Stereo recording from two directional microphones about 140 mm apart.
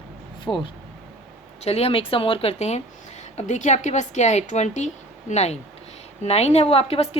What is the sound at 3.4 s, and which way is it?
A woman's voice, 60° left (ahead or behind).